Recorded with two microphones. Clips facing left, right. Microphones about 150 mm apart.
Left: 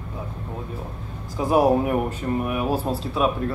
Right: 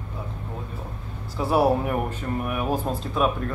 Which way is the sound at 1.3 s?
15° left (ahead or behind).